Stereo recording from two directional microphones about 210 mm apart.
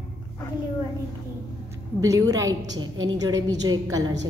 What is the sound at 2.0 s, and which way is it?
A woman's voice, 15° right (ahead or behind).